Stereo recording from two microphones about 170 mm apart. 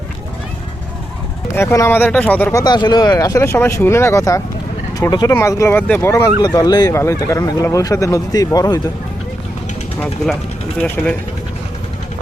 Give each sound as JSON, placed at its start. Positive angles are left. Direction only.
{"t": 1.5, "sound": "speech", "side_deg": 15}
{"t": 10.8, "sound": "speech", "side_deg": 10}